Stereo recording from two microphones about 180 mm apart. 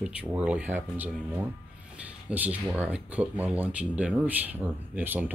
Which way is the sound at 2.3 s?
10° right (ahead or behind).